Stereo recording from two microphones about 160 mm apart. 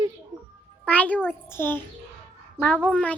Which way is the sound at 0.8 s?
10° left (ahead or behind).